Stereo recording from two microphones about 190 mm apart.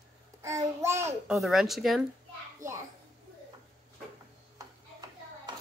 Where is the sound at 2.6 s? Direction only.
40° right (ahead or behind).